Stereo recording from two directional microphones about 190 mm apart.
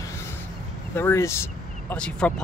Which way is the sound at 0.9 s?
15° left (ahead or behind).